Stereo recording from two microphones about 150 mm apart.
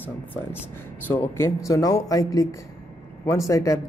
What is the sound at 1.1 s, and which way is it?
Speech, 15° left (ahead or behind).